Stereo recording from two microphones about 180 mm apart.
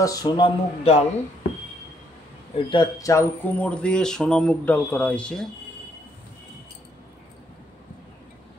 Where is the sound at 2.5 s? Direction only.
25° left (ahead or behind); by 5.5 s 5° left (ahead or behind).